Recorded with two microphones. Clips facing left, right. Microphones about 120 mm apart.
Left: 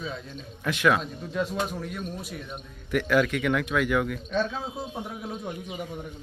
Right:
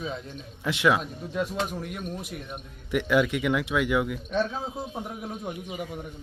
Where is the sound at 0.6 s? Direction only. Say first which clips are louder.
Even; 20° right (ahead or behind).